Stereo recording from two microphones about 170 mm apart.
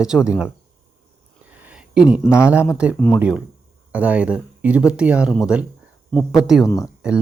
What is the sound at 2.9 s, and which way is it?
Speech, 10° left (ahead or behind).